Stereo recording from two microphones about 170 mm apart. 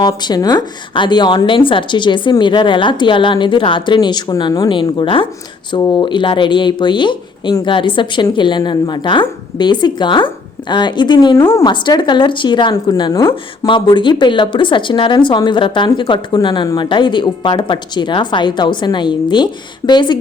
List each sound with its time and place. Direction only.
0.0 s speech: 25° left (ahead or behind)